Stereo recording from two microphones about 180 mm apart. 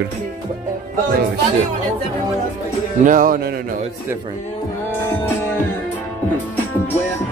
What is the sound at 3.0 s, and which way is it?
Speech, 50° right (ahead or behind).